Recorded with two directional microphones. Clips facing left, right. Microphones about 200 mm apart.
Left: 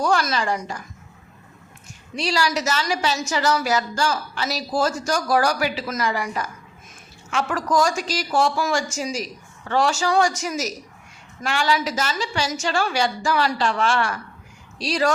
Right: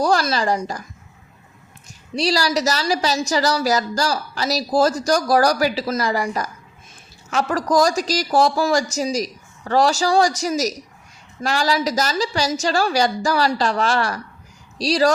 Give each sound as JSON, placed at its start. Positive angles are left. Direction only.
{"t": 0.0, "sound": "a woman's voice", "side_deg": -35}
{"t": 2.1, "sound": "a woman's voice", "side_deg": -35}